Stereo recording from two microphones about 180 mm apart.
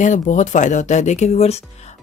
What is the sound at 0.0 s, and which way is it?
Speech, 40° left (ahead or behind).